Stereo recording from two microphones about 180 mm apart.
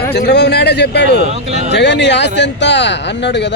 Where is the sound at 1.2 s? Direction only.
35° right (ahead or behind).